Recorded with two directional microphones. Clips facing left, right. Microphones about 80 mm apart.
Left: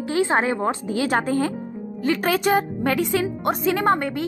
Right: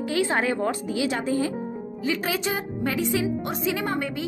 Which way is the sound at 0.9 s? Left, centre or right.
Left.